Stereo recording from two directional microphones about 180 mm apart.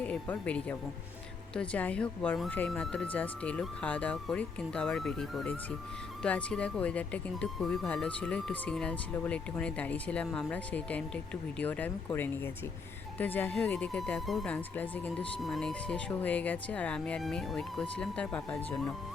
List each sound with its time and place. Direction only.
0.0 s speech: 5° left (ahead or behind)